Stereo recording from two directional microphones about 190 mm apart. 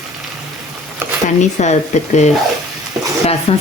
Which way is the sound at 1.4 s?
40° left (ahead or behind).